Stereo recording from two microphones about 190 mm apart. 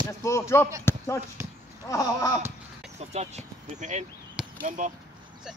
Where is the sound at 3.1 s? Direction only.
35° right (ahead or behind).